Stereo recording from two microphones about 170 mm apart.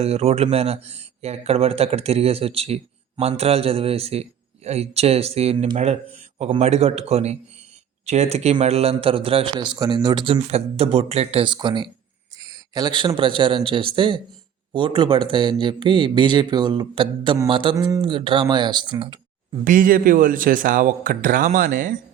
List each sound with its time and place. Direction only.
0.0 s a man's voice: 40° right (ahead or behind)
19.6 s a man's voice: 50° right (ahead or behind)